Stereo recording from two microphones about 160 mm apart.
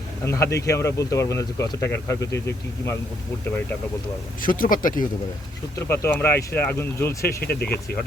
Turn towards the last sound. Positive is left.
turn(degrees=75)  # may be behind; listen again after turning